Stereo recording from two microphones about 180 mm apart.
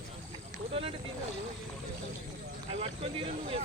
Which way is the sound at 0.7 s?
30° right (ahead or behind).